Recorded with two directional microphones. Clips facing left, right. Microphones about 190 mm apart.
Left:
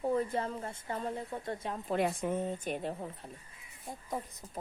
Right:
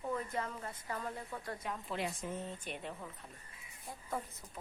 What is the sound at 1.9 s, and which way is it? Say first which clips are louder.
Speech: left 10 dB; 55° left (ahead or behind).